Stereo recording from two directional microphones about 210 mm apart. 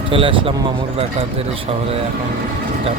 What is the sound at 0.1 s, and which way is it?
Speech, 25° right (ahead or behind).